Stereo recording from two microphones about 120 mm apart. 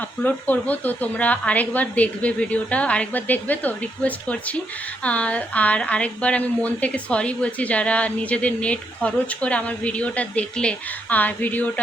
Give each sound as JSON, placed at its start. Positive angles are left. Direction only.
{"t": 0.2, "sound": "a woman's voice", "side_deg": 15}